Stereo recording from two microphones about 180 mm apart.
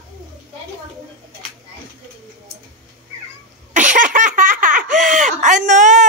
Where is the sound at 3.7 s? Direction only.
45° right (ahead or behind).